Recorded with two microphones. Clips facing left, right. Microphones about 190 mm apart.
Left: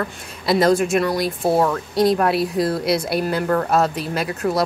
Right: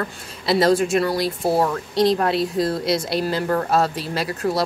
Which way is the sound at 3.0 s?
55° left (ahead or behind).